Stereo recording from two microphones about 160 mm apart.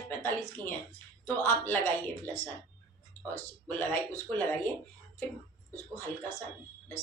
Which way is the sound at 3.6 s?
10° left (ahead or behind).